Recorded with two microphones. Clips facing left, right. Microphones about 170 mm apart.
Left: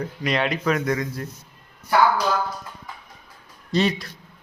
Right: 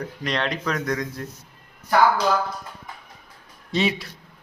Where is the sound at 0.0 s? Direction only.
5° left (ahead or behind).